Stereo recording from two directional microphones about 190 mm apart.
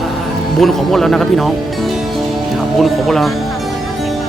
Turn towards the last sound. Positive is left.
turn(degrees=0)  # may be behind; listen again after turning